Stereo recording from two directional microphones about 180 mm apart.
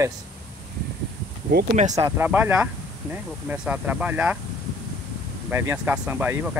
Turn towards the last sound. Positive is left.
turn(degrees=-10)  # may be behind; listen again after turning